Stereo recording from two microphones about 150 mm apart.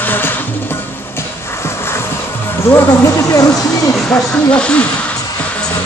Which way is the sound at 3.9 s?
5° left (ahead or behind).